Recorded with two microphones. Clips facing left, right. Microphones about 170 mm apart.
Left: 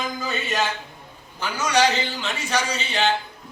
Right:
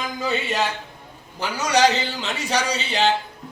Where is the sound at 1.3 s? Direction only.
35° right (ahead or behind).